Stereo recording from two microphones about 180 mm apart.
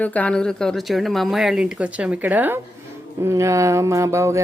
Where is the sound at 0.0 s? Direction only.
10° left (ahead or behind).